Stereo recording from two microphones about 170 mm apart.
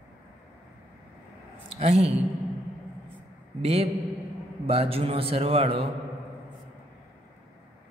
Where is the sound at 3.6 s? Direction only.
35° right (ahead or behind).